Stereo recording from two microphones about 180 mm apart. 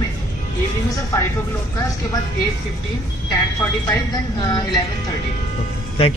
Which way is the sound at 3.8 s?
20° left (ahead or behind).